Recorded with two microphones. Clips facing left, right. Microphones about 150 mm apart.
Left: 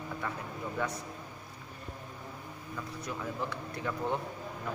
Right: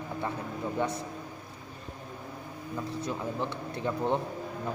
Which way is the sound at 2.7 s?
25° right (ahead or behind).